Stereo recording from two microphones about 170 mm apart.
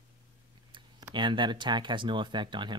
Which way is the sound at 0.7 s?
25° right (ahead or behind).